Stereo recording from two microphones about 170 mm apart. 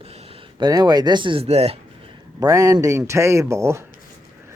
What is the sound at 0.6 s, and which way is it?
Speech, 25° right (ahead or behind).